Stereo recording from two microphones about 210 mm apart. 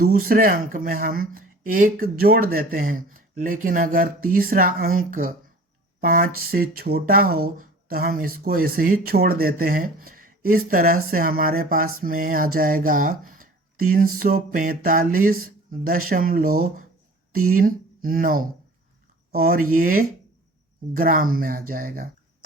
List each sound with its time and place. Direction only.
0.0 s speech: 45° right (ahead or behind)
11.9 s a sound: 40° right (ahead or behind)
12.5 s speech: 40° right (ahead or behind)
19.7 s speech: 45° right (ahead or behind)